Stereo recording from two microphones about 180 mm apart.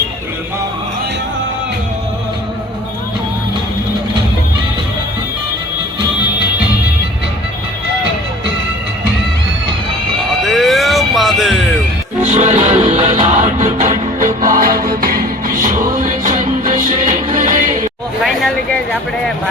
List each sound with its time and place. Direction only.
10.4 s music: centre (ahead or behind)
12.2 s music: 40° right (ahead or behind)
18.2 s speech: centre (ahead or behind)